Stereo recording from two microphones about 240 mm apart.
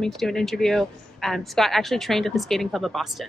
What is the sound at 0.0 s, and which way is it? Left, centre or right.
A woman's voice, centre.